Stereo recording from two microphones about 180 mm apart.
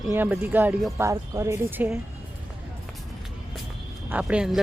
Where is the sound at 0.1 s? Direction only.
10° right (ahead or behind).